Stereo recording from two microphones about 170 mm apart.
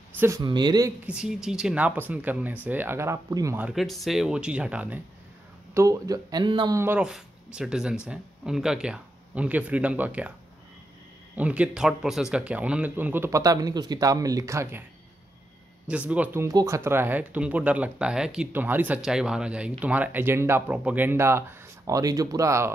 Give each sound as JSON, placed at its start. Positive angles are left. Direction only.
{"t": 0.2, "sound": "speech", "side_deg": -20}
{"t": 1.0, "sound": "speech", "side_deg": -5}
{"t": 3.6, "sound": "speech", "side_deg": 0}
{"t": 5.8, "sound": "speech", "side_deg": -20}
{"t": 6.8, "sound": "speech", "side_deg": -10}
{"t": 11.3, "sound": "speech", "side_deg": -10}
{"t": 15.9, "sound": "speech", "side_deg": -10}